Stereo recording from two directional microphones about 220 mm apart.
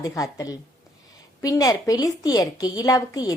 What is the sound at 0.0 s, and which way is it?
A woman's voice, 15° left (ahead or behind).